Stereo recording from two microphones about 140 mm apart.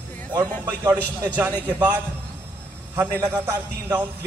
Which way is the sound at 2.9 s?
15° right (ahead or behind).